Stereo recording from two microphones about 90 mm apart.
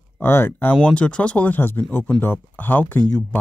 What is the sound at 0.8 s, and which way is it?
Speech, 10° left (ahead or behind).